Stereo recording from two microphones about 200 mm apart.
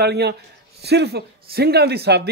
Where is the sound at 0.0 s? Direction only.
55° right (ahead or behind).